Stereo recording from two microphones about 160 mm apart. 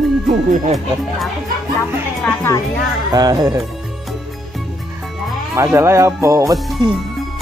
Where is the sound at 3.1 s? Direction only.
25° right (ahead or behind).